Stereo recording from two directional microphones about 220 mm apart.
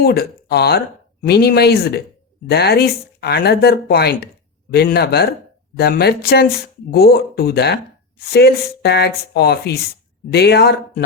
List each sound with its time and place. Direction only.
0.0 s speech: 45° left (ahead or behind)